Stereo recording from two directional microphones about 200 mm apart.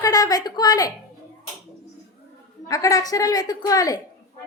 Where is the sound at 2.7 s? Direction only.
15° left (ahead or behind).